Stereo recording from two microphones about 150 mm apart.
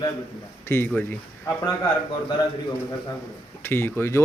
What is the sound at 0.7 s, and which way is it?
Speech, 15° left (ahead or behind).